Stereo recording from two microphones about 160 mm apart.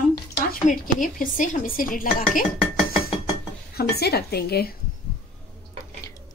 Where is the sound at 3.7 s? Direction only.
80° left.